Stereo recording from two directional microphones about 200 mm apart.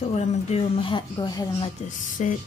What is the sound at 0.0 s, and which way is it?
Speech, 30° left (ahead or behind).